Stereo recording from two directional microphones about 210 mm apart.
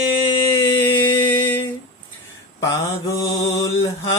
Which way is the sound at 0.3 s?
10° left (ahead or behind).